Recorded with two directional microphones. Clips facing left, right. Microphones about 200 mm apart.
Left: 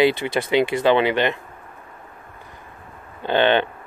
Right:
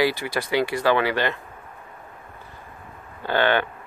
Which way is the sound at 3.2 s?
20° left (ahead or behind).